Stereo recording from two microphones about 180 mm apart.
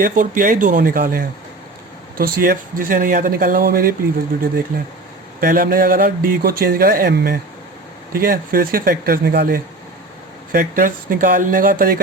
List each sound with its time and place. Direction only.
0.0 s speech: 50° right (ahead or behind)
10.5 s speech: 50° right (ahead or behind)